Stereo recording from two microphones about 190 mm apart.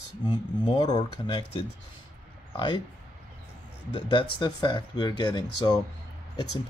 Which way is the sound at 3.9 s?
25° left (ahead or behind).